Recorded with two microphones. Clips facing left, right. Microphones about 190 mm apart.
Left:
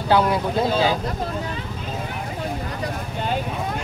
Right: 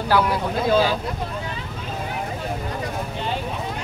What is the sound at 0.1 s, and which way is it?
Speech, 20° left (ahead or behind).